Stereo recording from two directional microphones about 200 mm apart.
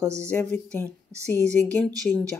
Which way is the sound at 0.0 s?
15° right (ahead or behind).